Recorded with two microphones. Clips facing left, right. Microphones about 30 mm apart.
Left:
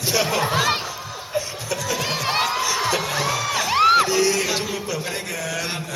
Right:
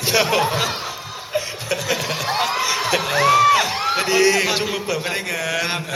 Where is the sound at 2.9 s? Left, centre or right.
Right.